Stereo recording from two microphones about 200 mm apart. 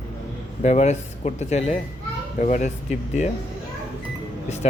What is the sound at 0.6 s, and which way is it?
Speech, 35° left (ahead or behind).